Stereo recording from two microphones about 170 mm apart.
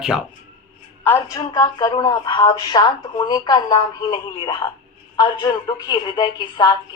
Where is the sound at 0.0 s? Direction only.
5° right (ahead or behind).